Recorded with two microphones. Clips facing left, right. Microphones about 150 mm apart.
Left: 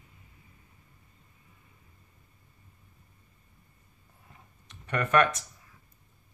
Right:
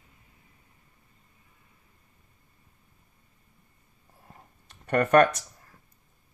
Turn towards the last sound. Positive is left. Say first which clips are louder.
# right 5 dB
turn(degrees=-45)  # may be behind; listen again after turning